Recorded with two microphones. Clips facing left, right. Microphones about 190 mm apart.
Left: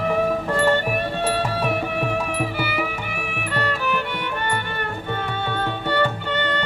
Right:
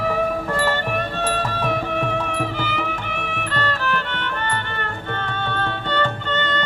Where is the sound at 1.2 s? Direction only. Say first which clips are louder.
Left 1 dB; 10° left (ahead or behind).